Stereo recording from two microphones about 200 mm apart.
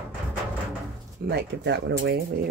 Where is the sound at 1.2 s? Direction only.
55° right (ahead or behind).